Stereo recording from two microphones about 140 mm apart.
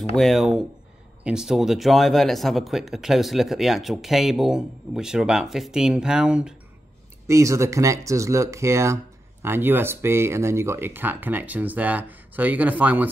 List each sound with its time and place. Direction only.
0.1 s speech: centre (ahead or behind)
7.2 s speech: 20° right (ahead or behind)